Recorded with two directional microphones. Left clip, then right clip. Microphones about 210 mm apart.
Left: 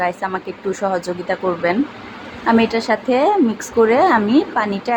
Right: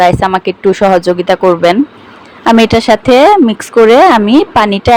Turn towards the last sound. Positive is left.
turn(degrees=-40)  # may be behind; listen again after turning